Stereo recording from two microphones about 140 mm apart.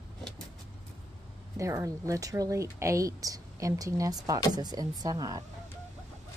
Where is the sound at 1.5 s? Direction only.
20° right (ahead or behind).